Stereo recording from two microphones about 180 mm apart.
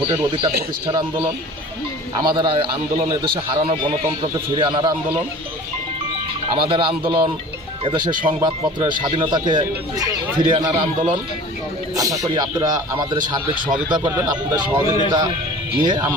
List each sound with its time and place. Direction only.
0.1 s speech: 25° right (ahead or behind)
2.1 s speech: 25° right (ahead or behind)
6.5 s speech: 30° right (ahead or behind)